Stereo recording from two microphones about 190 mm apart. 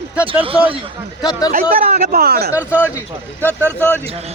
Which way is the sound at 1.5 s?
50° right (ahead or behind).